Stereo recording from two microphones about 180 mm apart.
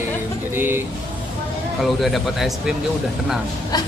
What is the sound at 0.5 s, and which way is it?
Speech, 10° right (ahead or behind).